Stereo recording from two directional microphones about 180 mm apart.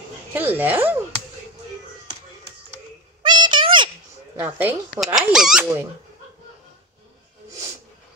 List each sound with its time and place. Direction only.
0.3 s speech: 10° right (ahead or behind)
3.2 s a sound: 25° right (ahead or behind)
4.4 s speech: 10° right (ahead or behind)